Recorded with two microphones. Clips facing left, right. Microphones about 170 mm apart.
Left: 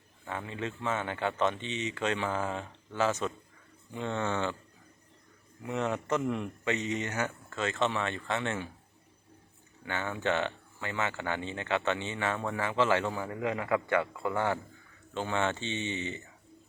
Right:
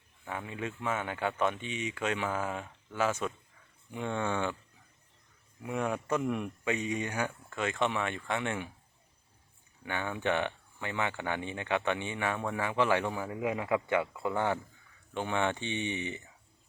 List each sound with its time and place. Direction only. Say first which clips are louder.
0.3 s speech: left 1 dB; 10° right (ahead or behind)
5.6 s speech: left 1 dB; 10° right (ahead or behind)
9.8 s speech: even; 15° right (ahead or behind)